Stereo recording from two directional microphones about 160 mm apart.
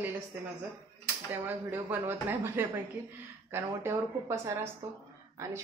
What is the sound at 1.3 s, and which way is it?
Speech, 10° right (ahead or behind).